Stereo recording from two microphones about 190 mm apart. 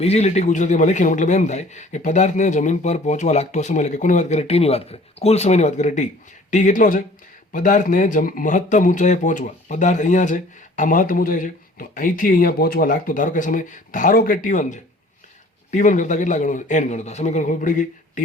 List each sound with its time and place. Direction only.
0.0 s speech: 35° left (ahead or behind)